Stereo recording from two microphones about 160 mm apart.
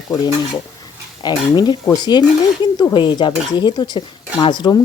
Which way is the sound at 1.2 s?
25° left (ahead or behind).